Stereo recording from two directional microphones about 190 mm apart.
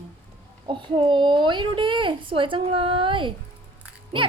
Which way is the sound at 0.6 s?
25° right (ahead or behind).